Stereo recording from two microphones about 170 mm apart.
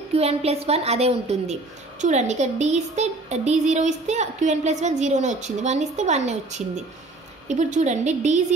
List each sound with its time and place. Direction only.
0.1 s a woman's voice: 35° right (ahead or behind)